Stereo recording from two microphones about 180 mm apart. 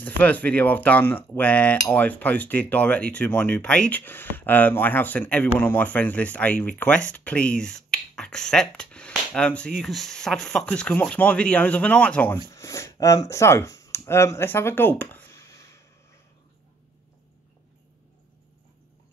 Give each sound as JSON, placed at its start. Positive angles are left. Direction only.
{"t": 0.0, "sound": "speech", "side_deg": 10}